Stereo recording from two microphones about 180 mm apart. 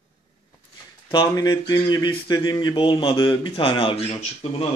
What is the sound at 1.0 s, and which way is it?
Speech, 20° left (ahead or behind).